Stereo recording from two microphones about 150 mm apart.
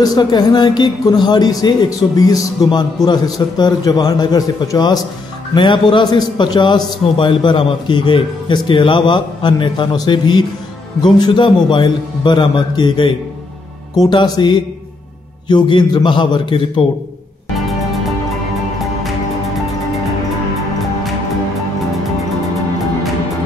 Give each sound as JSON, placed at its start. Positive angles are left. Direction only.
{"t": 0.0, "sound": "a man's voice", "side_deg": 25}